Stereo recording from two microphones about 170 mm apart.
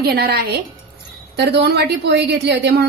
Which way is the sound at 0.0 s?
70° right (ahead or behind).